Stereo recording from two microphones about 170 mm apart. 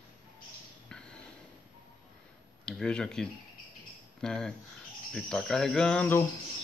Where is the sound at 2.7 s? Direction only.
5° left (ahead or behind).